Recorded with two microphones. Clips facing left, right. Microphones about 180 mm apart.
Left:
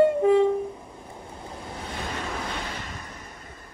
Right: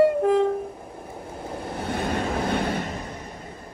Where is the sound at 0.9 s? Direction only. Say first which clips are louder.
Right 5 dB; 60° right (ahead or behind).